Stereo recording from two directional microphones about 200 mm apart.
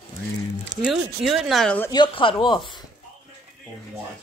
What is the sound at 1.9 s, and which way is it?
Speech, 25° left (ahead or behind).